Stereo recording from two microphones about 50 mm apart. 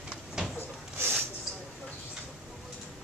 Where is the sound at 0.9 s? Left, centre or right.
Right.